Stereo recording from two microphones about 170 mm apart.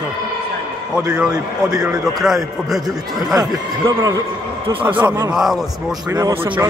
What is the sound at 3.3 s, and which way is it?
A man's voice, 20° right (ahead or behind).